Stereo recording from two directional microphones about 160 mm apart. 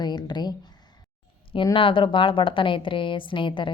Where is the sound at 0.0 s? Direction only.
25° left (ahead or behind).